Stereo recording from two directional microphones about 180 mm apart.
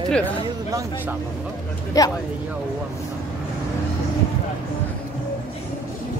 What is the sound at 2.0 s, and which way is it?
Speech, 20° left (ahead or behind).